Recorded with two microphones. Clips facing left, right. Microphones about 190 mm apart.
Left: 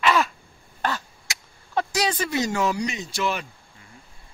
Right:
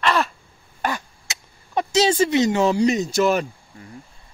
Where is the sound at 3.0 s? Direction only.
45° right (ahead or behind).